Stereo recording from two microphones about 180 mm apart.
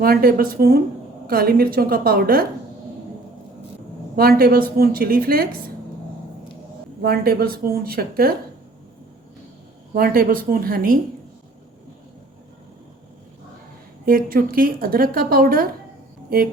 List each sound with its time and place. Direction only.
0.0 s a woman's voice: 55° right (ahead or behind)
4.1 s a woman's voice: 55° right (ahead or behind)
7.0 s a woman's voice: 60° right (ahead or behind)
9.9 s a woman's voice: 55° right (ahead or behind)
14.0 s a woman's voice: 55° right (ahead or behind)